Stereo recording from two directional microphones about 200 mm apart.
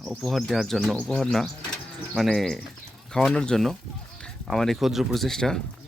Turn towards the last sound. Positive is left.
turn(degrees=0)  # may be behind; listen again after turning